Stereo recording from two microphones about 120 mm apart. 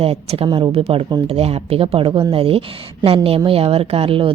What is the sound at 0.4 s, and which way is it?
A woman's voice, 45° right (ahead or behind).